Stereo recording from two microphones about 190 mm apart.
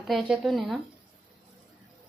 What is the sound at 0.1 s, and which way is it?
Speech, centre (ahead or behind).